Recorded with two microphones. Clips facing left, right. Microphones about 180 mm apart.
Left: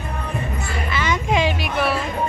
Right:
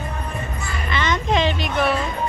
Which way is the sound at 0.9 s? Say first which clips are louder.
Right 1 dB; 10° left (ahead or behind).